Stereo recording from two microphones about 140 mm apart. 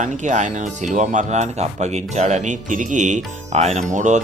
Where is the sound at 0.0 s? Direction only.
60° right (ahead or behind).